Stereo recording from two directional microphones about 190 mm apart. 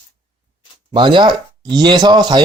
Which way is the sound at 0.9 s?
25° right (ahead or behind).